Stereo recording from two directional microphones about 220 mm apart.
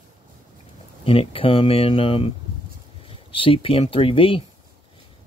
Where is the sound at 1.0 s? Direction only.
25° left (ahead or behind).